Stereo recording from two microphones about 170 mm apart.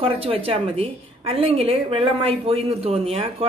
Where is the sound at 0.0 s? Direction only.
35° right (ahead or behind).